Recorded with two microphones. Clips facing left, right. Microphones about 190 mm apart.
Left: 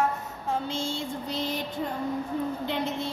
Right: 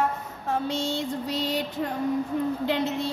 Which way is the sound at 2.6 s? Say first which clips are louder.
Right 4 dB; 70° right (ahead or behind).